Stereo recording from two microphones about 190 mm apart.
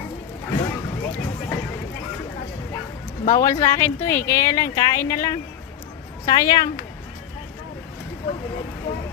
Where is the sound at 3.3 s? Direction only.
15° left (ahead or behind).